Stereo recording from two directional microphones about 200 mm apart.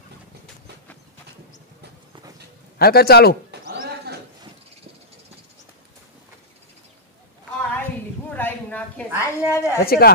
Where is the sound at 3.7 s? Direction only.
55° right (ahead or behind).